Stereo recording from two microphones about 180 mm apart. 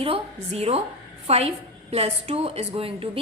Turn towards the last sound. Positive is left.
turn(degrees=-30)  # may be behind; listen again after turning